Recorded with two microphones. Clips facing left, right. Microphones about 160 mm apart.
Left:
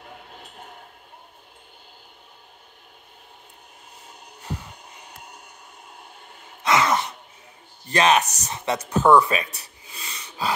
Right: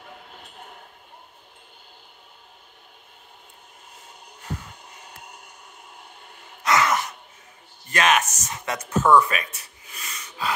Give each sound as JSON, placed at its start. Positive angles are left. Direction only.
{"t": 6.6, "sound": "sigh", "side_deg": 25}
{"t": 7.9, "sound": "speech", "side_deg": 30}
{"t": 9.0, "sound": "gasp", "side_deg": 25}